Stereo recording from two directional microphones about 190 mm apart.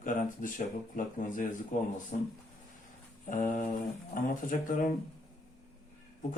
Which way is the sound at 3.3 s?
40° left (ahead or behind).